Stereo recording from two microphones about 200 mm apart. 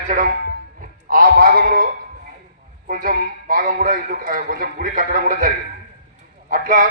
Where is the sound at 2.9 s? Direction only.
45° right (ahead or behind).